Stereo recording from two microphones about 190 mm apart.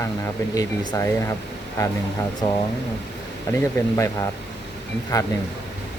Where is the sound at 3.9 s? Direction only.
15° left (ahead or behind).